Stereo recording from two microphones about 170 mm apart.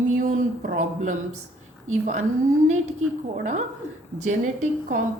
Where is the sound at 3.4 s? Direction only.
45° right (ahead or behind).